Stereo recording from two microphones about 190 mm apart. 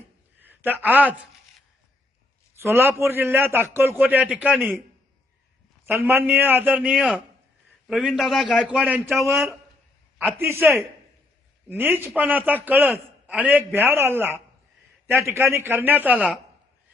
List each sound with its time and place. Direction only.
0.4 s speech: 10° right (ahead or behind)
2.6 s a man's voice: 10° right (ahead or behind)
5.8 s a man's voice: 10° right (ahead or behind); by 8.6 s 5° left (ahead or behind)
8.6 s a man's voice: 5° right (ahead or behind)
10.3 s a man's voice: 15° right (ahead or behind)